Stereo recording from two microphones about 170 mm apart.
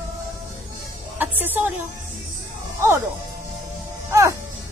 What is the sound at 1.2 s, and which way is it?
Speech, 10° right (ahead or behind).